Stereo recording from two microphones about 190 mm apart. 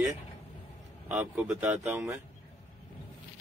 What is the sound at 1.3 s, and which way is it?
Speech, 10° right (ahead or behind).